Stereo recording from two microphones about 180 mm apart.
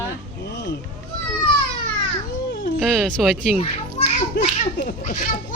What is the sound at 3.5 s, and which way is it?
Children playing, 35° left (ahead or behind).